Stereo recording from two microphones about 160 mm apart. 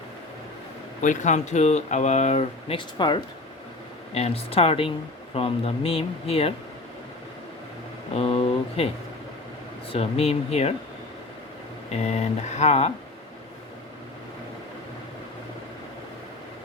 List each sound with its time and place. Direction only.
1.0 s speech: 50° left (ahead or behind)
8.1 s speech: 35° left (ahead or behind)
9.9 s speech: 40° left (ahead or behind)
11.9 s speech: 45° left (ahead or behind)